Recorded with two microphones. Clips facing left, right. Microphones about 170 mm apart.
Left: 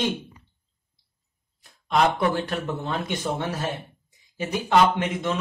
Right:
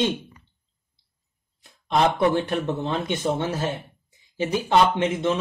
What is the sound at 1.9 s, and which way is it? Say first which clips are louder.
Speech: right 2 dB; 20° right (ahead or behind).